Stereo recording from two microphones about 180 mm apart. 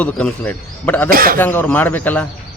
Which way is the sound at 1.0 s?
55° right (ahead or behind).